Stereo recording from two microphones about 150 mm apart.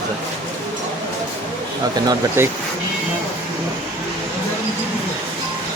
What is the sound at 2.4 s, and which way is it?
Speech, 15° right (ahead or behind).